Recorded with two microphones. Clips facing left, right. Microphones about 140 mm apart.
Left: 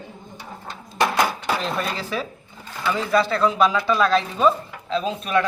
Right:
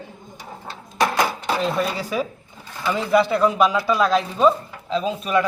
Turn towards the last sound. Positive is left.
turn(degrees=-10)  # may be behind; listen again after turning